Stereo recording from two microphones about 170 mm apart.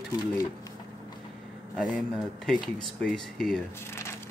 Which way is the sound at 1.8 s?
Centre (ahead or behind).